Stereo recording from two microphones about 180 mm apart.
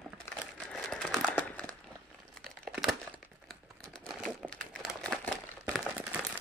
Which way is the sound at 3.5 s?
Centre (ahead or behind).